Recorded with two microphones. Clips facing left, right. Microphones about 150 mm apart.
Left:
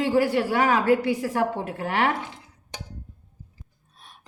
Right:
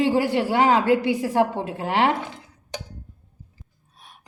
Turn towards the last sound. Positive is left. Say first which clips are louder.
# right 1 dB
turn(degrees=-10)  # may be behind; listen again after turning